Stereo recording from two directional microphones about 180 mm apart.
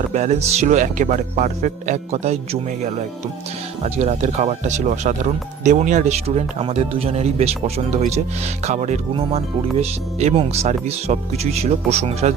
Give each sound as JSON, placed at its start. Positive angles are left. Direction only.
{"t": 0.1, "sound": "speech", "side_deg": -40}